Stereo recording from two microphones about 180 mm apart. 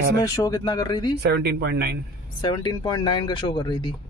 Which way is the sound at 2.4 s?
25° left (ahead or behind).